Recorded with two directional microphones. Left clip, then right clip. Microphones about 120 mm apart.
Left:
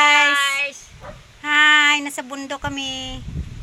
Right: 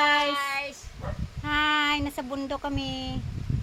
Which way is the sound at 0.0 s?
20° left (ahead or behind).